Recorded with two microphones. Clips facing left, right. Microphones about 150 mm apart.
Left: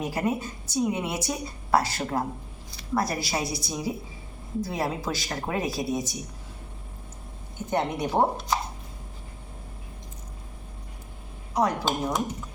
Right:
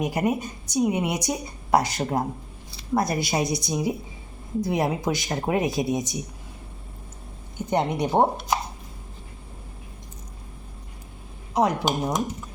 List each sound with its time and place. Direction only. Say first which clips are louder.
0.0 s a woman's voice: right 3 dB; 15° right (ahead or behind)
8.0 s speech: right 3 dB; 20° right (ahead or behind)
11.5 s speech: right 3 dB; 20° right (ahead or behind)